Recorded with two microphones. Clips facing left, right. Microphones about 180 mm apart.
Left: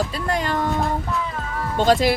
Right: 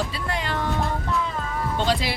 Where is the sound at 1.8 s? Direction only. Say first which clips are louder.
Left 9 dB; 45° left (ahead or behind).